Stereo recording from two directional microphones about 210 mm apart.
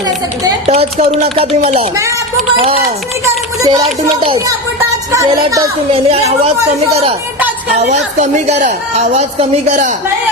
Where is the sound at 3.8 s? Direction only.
25° right (ahead or behind).